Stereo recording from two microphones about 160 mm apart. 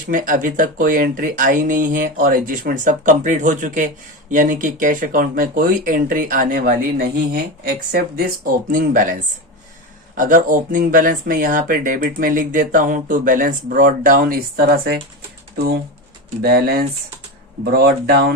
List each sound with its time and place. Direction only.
0.1 s speech: 55° right (ahead or behind); by 18.3 s 90° right